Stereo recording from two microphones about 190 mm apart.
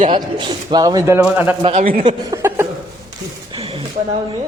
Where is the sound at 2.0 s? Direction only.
20° right (ahead or behind).